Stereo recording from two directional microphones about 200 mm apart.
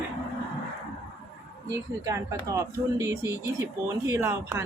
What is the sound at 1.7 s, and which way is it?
Speech, 15° right (ahead or behind).